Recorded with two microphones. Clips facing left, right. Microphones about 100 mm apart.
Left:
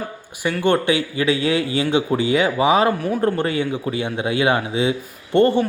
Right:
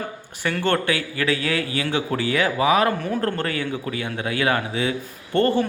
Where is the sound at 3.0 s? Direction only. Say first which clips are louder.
Left 4 dB; 10° left (ahead or behind).